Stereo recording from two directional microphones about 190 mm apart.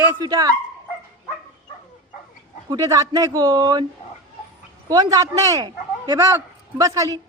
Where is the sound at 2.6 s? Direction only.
20° right (ahead or behind).